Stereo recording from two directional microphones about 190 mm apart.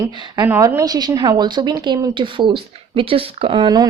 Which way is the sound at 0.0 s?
20° right (ahead or behind).